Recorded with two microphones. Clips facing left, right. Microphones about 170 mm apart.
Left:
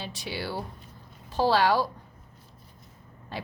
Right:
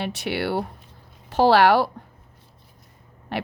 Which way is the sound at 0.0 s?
70° right (ahead or behind).